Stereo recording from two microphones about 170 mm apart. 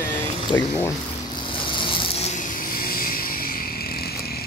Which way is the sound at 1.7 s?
30° left (ahead or behind).